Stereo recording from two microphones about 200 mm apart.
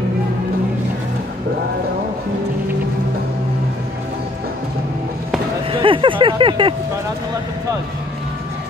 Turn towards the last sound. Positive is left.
turn(degrees=-25)  # may be behind; listen again after turning